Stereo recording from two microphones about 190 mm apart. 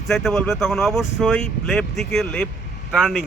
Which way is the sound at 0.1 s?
5° left (ahead or behind).